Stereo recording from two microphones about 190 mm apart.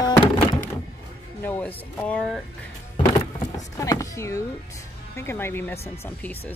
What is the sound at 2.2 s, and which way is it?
Speech, centre (ahead or behind).